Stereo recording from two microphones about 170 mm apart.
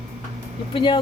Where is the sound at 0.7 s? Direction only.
30° left (ahead or behind).